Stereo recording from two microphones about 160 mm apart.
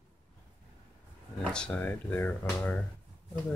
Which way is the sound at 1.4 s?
5° left (ahead or behind).